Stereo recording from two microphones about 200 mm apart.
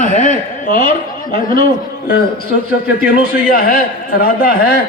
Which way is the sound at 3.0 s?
45° left (ahead or behind).